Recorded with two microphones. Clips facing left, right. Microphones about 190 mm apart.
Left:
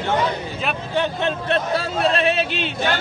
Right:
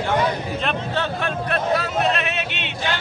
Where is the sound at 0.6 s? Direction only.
10° left (ahead or behind).